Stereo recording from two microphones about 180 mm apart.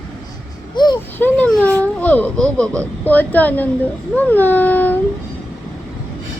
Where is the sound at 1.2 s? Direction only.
10° left (ahead or behind).